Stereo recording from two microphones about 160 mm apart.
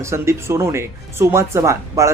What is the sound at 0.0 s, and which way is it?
Speech, 15° right (ahead or behind).